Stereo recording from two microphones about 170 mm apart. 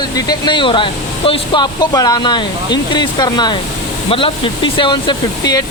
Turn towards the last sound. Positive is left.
turn(degrees=25)  # may be behind; listen again after turning